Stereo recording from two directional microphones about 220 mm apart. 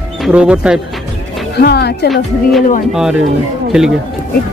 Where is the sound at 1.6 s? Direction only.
50° left (ahead or behind).